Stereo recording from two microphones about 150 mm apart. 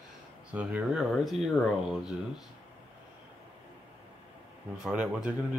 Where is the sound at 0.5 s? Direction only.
5° right (ahead or behind).